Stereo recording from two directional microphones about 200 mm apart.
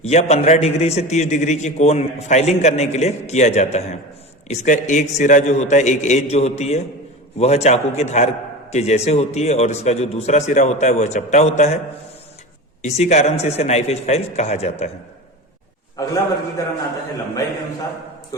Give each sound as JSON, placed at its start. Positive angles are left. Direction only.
{"t": 0.0, "sound": "a man's voice", "side_deg": 35}
{"t": 12.8, "sound": "a man's voice", "side_deg": 35}
{"t": 16.6, "sound": "a man's voice", "side_deg": 15}